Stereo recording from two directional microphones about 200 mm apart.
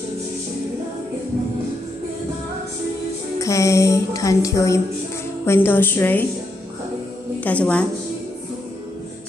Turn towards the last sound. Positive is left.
turn(degrees=5)  # may be behind; listen again after turning